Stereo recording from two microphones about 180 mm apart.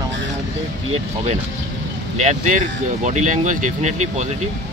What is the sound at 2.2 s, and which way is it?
Speech, 40° right (ahead or behind).